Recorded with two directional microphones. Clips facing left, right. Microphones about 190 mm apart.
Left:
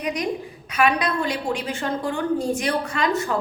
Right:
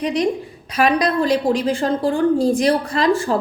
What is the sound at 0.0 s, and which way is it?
A woman's voice, 30° right (ahead or behind).